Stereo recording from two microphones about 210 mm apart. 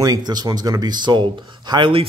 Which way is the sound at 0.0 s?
20° right (ahead or behind).